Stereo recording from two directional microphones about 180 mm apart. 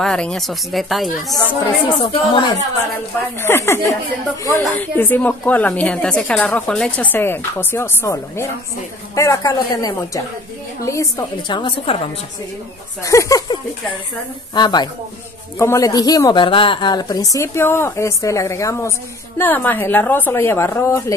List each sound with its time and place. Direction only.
0.0 s speech: 5° left (ahead or behind)
2.0 s a woman's voice: 25° left (ahead or behind)
3.4 s a woman's voice: 15° left (ahead or behind); by 12.0 s 30° left (ahead or behind)
13.0 s a woman's voice: 15° left (ahead or behind)